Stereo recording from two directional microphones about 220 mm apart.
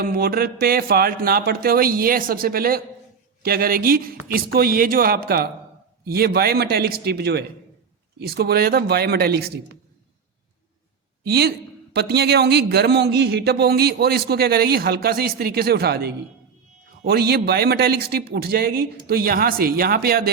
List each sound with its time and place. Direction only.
0.0 s speech: 45° right (ahead or behind)
11.2 s a woman's voice: 45° right (ahead or behind)